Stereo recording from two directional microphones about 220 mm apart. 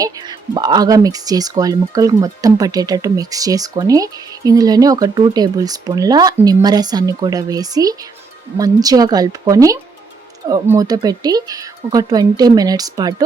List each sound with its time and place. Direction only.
0.0 s speech: 20° right (ahead or behind)